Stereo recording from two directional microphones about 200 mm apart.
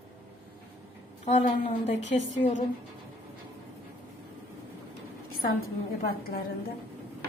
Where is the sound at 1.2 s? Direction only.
35° left (ahead or behind).